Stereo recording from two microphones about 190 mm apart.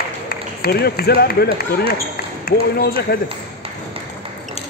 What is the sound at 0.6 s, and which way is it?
Speech, 55° left (ahead or behind).